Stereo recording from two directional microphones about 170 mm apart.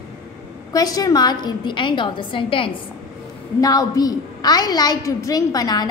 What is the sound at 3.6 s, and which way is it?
A woman's voice, 20° left (ahead or behind).